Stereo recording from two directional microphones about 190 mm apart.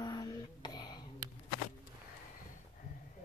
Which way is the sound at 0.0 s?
20° left (ahead or behind).